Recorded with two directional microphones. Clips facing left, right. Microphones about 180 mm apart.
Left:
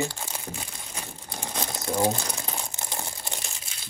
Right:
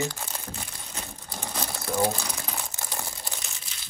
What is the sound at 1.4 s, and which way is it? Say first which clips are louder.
Crumpling: left 1 dB; 20° left (ahead or behind).